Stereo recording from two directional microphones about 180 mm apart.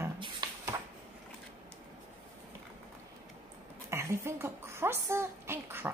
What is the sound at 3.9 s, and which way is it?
A woman's voice, 15° right (ahead or behind).